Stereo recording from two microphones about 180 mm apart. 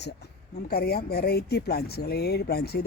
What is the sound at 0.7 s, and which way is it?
Speech, 60° left (ahead or behind).